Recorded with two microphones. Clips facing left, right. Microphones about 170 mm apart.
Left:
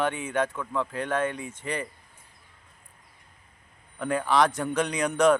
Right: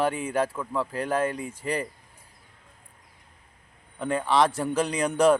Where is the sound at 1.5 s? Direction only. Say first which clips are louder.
Right 3 dB; 35° right (ahead or behind).